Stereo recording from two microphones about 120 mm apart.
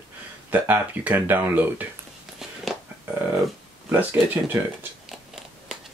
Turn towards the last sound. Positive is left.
turn(degrees=-15)  # may be behind; listen again after turning